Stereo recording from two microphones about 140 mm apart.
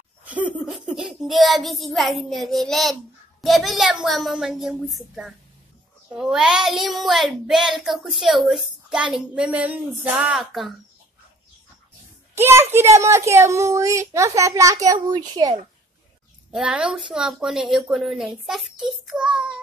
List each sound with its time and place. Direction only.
0.3 s laughter: 10° right (ahead or behind)
0.7 s a child's voice: 5° right (ahead or behind)
12.4 s a child's voice: 15° right (ahead or behind)
16.5 s a child's voice: 5° right (ahead or behind)